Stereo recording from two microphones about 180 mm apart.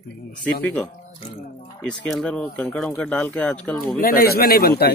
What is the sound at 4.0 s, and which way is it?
Speech, 55° left (ahead or behind).